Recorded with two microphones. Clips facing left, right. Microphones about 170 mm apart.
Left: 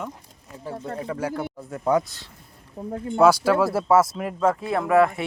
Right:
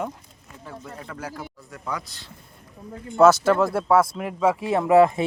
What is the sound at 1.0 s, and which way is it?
Speech, 30° left (ahead or behind).